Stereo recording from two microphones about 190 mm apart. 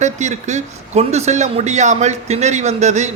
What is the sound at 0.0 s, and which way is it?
A man's voice, 40° right (ahead or behind).